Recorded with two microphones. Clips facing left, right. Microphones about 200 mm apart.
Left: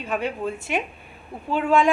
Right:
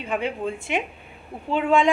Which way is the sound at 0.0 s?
20° right (ahead or behind).